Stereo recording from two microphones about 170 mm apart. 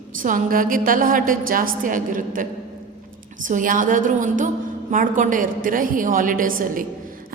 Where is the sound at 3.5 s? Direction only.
50° right (ahead or behind).